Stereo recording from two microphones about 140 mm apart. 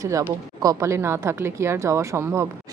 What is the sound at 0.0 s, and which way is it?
Speech, 25° right (ahead or behind).